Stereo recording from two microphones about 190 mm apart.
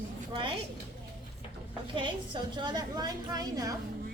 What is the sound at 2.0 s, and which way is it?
A woman's voice, 25° right (ahead or behind).